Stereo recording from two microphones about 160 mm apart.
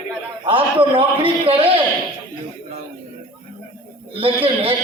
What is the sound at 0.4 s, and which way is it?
A man's voice, 35° right (ahead or behind).